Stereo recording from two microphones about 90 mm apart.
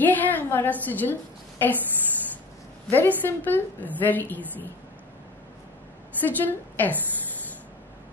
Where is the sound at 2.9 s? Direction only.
20° left (ahead or behind).